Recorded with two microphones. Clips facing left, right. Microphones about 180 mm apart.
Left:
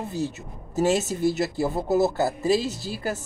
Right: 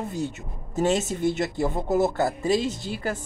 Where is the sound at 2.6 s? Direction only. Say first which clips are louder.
Right 2 dB; 35° left (ahead or behind).